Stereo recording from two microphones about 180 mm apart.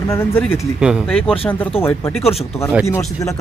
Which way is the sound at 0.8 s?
5° right (ahead or behind).